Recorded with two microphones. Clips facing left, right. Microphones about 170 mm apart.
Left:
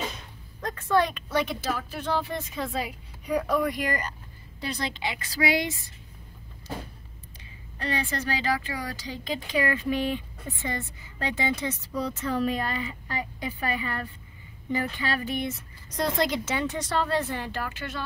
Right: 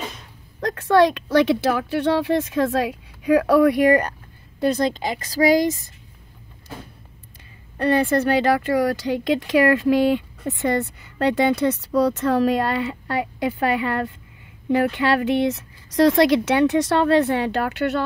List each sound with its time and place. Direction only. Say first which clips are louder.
0.6 s speech: right 8 dB; 80° right; by 4.1 s 60° right (ahead or behind)
4.6 s a woman's voice: right 12 dB; 45° right (ahead or behind)
7.7 s speech: right 12 dB; 55° right (ahead or behind)